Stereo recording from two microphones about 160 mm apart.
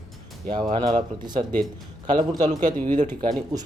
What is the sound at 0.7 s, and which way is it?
Speech, 30° right (ahead or behind).